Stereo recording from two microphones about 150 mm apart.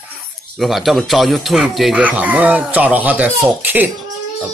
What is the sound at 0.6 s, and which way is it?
Speech, centre (ahead or behind).